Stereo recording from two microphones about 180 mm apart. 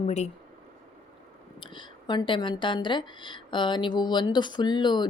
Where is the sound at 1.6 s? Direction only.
25° left (ahead or behind).